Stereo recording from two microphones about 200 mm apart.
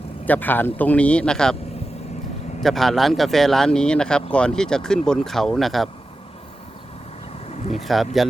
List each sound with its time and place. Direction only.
0.3 s a man's voice: 10° left (ahead or behind)
2.6 s speech: centre (ahead or behind)
7.4 s vehicle: 35° left (ahead or behind)
7.8 s speech: centre (ahead or behind)